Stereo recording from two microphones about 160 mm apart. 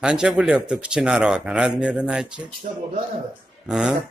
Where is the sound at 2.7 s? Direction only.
50° right (ahead or behind).